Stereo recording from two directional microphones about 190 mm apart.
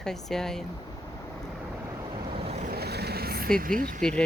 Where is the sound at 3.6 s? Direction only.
45° right (ahead or behind).